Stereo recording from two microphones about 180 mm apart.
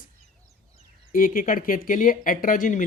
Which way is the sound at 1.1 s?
50° left (ahead or behind).